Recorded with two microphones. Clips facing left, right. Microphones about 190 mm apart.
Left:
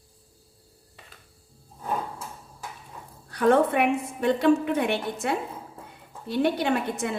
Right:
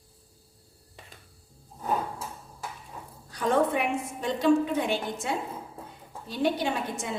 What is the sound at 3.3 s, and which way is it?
A woman's voice, 60° left (ahead or behind).